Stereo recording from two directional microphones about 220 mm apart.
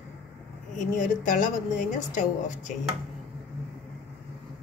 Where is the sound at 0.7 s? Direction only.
35° left (ahead or behind).